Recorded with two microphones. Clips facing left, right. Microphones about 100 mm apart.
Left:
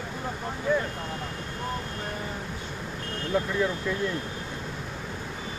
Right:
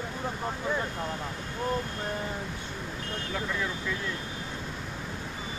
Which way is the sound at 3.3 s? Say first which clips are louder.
Left 9 dB; 20° left (ahead or behind).